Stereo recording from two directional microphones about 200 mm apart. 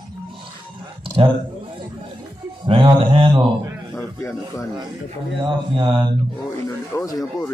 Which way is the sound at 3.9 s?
15° left (ahead or behind).